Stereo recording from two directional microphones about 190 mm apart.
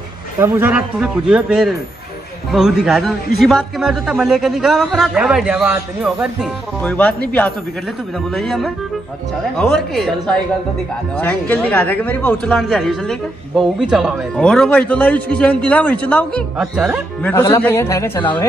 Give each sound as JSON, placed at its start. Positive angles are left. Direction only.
{"t": 0.4, "sound": "a man's voice", "side_deg": -10}
{"t": 17.2, "sound": "speech", "side_deg": 15}